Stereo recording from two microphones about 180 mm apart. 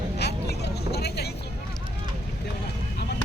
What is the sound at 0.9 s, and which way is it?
Vehicle, 65° left (ahead or behind).